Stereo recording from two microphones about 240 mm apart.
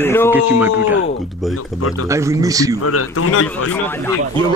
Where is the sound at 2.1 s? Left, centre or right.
Centre.